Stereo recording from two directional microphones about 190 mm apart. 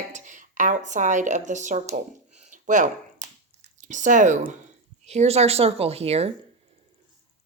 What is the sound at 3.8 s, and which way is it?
Speech, 40° right (ahead or behind).